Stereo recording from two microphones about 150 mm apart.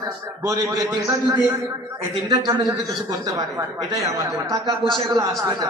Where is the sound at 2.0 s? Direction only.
25° right (ahead or behind).